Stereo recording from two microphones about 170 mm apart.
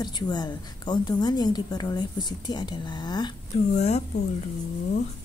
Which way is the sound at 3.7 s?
40° left (ahead or behind).